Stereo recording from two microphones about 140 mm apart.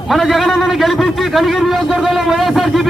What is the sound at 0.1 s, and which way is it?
A man's voice, centre (ahead or behind).